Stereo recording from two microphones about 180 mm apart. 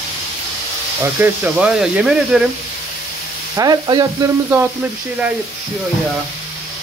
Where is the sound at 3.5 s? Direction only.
20° right (ahead or behind).